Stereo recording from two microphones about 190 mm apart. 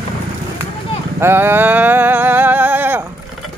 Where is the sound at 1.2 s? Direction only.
10° right (ahead or behind).